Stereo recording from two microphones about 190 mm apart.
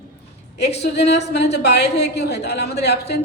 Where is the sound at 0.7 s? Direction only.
60° left (ahead or behind).